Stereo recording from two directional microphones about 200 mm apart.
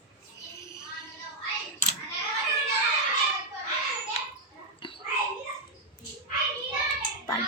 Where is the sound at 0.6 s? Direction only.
15° left (ahead or behind).